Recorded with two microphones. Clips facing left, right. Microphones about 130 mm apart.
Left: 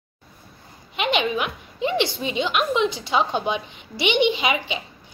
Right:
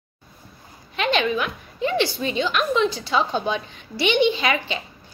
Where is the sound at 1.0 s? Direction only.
15° left (ahead or behind).